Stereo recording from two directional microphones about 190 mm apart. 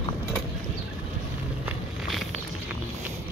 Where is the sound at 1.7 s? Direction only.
Centre (ahead or behind).